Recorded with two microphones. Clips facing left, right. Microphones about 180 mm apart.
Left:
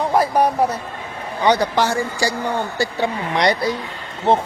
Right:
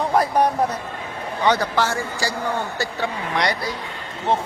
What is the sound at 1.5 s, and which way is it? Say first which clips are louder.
A man's voice: left 3 dB; 15° left (ahead or behind).